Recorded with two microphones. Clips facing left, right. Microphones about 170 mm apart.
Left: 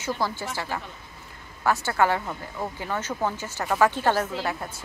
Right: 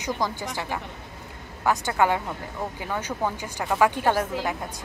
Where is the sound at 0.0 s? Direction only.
15° right (ahead or behind).